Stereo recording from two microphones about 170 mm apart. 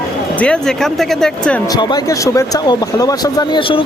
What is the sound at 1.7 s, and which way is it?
Speech, 25° left (ahead or behind).